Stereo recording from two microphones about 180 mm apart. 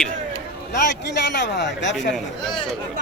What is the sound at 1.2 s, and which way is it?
Speech, 75° left (ahead or behind).